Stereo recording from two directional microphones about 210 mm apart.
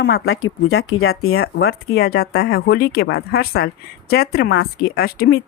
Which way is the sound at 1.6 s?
50° left (ahead or behind).